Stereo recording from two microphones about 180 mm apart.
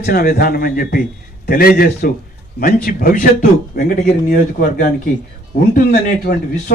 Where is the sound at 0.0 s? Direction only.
55° left (ahead or behind).